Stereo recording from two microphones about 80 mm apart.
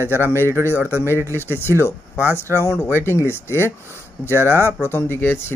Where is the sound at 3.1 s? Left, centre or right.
Left.